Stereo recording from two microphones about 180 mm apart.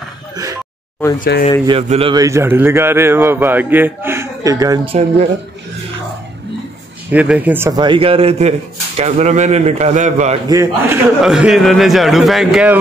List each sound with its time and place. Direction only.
1.7 s speech: 35° right (ahead or behind)
2.1 s a man's voice: 15° right (ahead or behind)
4.8 s speech: 35° right (ahead or behind)
7.1 s a man's voice: 10° right (ahead or behind)
7.8 s speech: 30° right (ahead or behind)
10.5 s a man's voice: 15° right (ahead or behind)
11.2 s speech: 5° right (ahead or behind)